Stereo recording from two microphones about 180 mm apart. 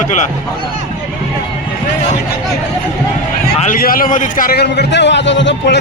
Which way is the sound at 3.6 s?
50° left (ahead or behind).